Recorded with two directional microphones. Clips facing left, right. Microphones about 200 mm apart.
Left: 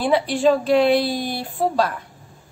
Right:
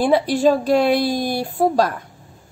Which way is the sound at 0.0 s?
40° right (ahead or behind).